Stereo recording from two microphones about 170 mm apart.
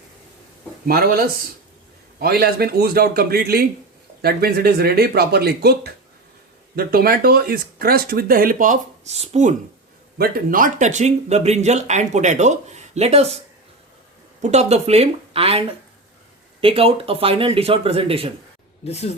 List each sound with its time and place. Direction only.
0.9 s speech: 60° right (ahead or behind); by 9.6 s 45° right (ahead or behind)
10.2 s speech: 55° right (ahead or behind); by 13.4 s 35° right (ahead or behind)
14.4 s speech: 40° right (ahead or behind)
18.9 s speech: 40° left (ahead or behind)